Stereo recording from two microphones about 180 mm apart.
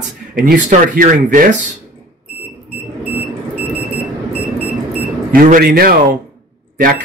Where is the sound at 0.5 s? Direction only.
50° right (ahead or behind).